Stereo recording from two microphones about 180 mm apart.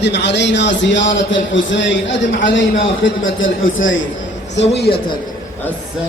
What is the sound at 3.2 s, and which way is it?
Speech, 90° left.